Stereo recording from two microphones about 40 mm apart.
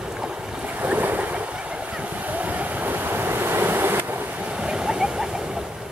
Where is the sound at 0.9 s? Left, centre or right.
Right.